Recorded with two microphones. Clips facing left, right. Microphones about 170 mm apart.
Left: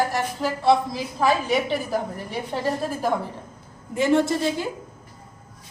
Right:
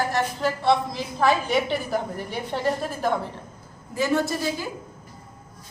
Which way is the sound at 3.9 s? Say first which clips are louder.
Left 4 dB; 25° left (ahead or behind).